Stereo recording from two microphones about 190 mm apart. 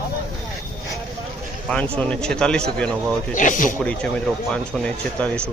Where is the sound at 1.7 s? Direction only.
5° left (ahead or behind).